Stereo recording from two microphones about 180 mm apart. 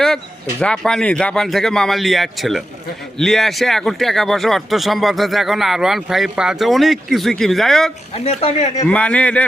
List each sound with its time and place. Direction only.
0.6 s speech: 5° left (ahead or behind)
8.1 s speech: 35° left (ahead or behind)
8.9 s speech: 5° left (ahead or behind)